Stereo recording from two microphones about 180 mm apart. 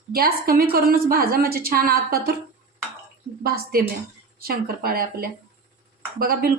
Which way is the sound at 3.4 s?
60° right (ahead or behind).